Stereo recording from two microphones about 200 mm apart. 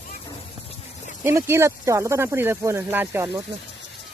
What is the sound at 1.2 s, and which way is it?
Speech, 15° right (ahead or behind).